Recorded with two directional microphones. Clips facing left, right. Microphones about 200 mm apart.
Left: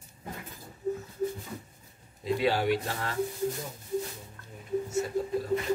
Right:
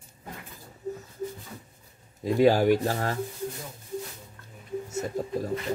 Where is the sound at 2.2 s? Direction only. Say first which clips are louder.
Right 6 dB; 45° right (ahead or behind).